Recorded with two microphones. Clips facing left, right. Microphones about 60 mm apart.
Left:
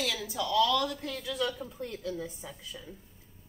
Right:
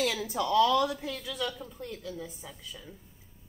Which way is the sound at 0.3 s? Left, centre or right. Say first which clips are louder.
Right 2 dB; right.